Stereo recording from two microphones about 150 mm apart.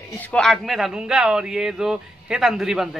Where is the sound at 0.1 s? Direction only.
10° left (ahead or behind).